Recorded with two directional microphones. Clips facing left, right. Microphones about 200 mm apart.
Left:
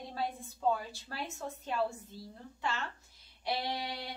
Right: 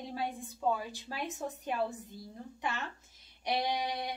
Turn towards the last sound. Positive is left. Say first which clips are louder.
# right 4 dB
turn(degrees=-15)  # may be behind; listen again after turning